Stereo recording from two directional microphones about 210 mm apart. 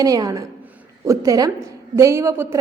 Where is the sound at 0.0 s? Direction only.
15° right (ahead or behind).